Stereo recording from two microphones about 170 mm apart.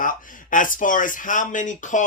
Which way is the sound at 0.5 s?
50° left (ahead or behind).